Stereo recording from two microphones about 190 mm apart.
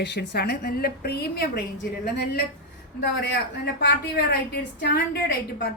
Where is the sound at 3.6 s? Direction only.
60° left (ahead or behind).